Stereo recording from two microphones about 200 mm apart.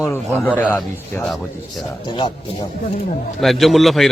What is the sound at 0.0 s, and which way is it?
A man's voice, 10° left (ahead or behind).